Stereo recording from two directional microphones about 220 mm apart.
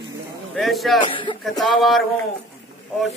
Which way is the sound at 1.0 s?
20° left (ahead or behind).